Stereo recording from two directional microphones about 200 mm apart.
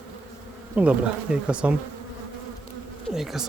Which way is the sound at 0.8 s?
5° right (ahead or behind).